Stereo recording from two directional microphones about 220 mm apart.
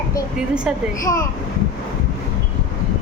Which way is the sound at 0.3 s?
5° right (ahead or behind).